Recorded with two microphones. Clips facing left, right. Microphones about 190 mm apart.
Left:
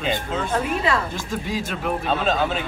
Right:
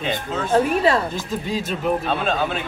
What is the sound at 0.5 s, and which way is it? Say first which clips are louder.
Speech: right 6 dB; 30° right (ahead or behind).